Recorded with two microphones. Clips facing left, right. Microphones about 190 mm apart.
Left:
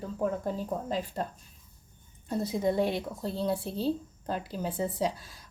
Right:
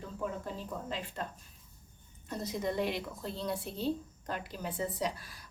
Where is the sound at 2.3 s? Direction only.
30° left (ahead or behind).